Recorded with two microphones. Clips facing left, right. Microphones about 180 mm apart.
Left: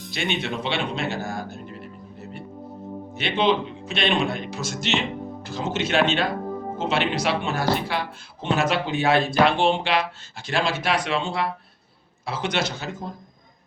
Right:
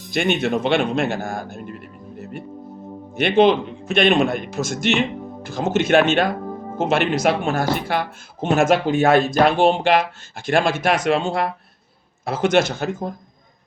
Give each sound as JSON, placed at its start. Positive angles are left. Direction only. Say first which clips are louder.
{"t": 0.1, "sound": "speech", "louder": "right 8 dB", "side_deg": -50}
{"t": 3.2, "sound": "speech", "louder": "right 7 dB", "side_deg": -50}